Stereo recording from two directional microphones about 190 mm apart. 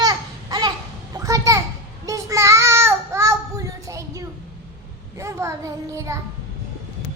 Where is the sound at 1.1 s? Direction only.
15° right (ahead or behind).